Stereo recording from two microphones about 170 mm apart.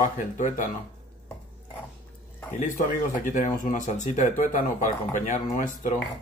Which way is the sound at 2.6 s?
50° left (ahead or behind).